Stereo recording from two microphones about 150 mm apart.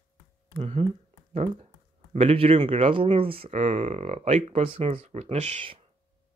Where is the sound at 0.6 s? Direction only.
40° right (ahead or behind).